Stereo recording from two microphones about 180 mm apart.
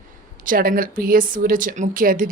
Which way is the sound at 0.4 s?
50° right (ahead or behind).